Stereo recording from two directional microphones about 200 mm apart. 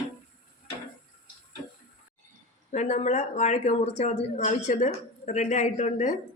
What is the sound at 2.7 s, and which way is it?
A woman's voice, 35° left (ahead or behind).